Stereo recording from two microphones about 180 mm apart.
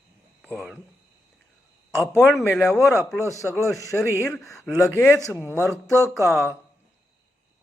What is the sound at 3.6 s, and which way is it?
Speech, 15° left (ahead or behind).